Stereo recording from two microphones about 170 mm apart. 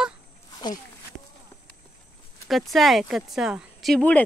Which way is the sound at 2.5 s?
Centre (ahead or behind).